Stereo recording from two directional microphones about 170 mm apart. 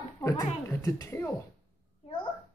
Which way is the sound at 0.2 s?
20° left (ahead or behind).